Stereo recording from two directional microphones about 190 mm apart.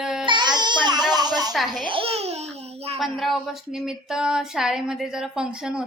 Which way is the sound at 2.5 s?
35° right (ahead or behind).